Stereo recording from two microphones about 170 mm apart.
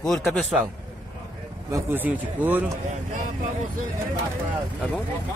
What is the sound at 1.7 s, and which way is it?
Speech, 10° right (ahead or behind).